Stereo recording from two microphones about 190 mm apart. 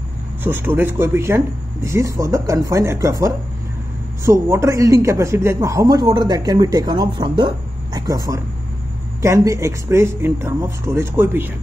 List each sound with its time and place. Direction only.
0.4 s a man's voice: 10° right (ahead or behind)